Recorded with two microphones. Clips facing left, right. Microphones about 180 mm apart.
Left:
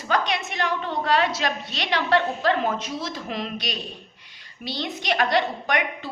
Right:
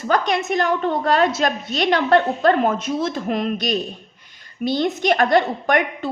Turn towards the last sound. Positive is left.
turn(degrees=-50)  # may be behind; listen again after turning